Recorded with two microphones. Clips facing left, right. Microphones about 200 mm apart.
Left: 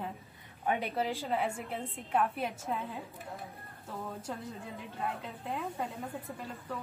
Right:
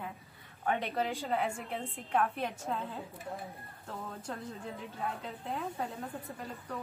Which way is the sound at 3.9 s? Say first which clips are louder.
Left 1 dB; 5° left (ahead or behind).